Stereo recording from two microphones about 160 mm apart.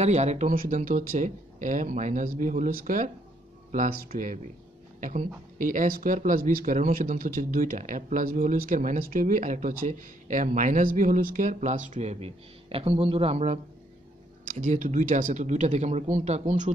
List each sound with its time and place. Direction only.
0.0 s speech: 45° right (ahead or behind)
0.6 s speech: 55° right (ahead or behind)